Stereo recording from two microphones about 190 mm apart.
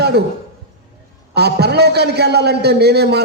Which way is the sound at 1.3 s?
60° right (ahead or behind).